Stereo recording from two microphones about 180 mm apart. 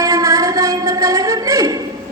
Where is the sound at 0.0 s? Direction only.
20° right (ahead or behind).